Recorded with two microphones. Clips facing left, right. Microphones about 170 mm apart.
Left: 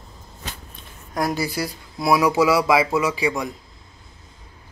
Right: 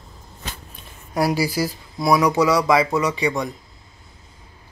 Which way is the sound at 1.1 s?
10° right (ahead or behind).